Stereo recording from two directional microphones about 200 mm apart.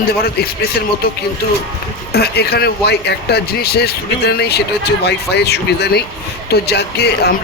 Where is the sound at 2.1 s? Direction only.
50° left (ahead or behind).